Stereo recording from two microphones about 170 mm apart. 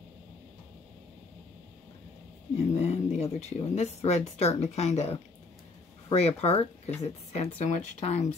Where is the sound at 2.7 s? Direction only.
40° left (ahead or behind).